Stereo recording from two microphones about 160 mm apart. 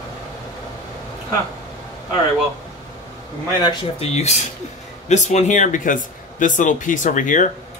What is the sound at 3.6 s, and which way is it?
Speech, 40° left (ahead or behind).